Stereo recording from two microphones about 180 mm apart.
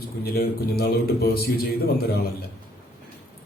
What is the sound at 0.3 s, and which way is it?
A man's voice, 60° left (ahead or behind).